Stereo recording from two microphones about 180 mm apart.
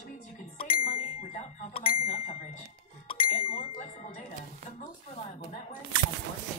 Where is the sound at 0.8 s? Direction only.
50° left (ahead or behind).